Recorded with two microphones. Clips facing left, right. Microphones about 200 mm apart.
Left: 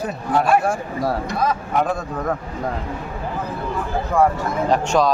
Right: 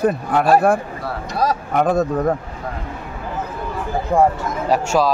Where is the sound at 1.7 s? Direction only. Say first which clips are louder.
Right 6 dB; 50° right (ahead or behind).